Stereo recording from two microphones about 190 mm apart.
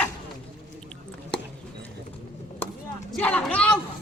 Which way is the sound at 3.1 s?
5° left (ahead or behind).